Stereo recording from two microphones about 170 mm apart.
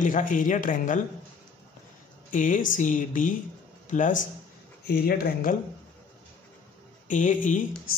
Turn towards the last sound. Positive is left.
turn(degrees=50)  # may be behind; listen again after turning